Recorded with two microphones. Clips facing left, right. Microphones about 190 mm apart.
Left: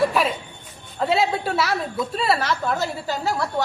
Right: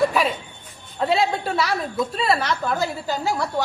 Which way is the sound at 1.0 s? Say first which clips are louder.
Even; centre (ahead or behind).